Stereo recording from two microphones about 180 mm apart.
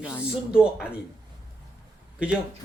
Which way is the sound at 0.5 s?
5° right (ahead or behind).